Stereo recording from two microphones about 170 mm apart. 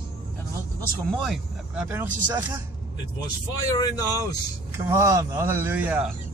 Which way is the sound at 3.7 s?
20° left (ahead or behind).